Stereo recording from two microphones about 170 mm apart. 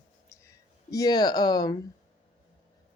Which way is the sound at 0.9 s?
25° left (ahead or behind).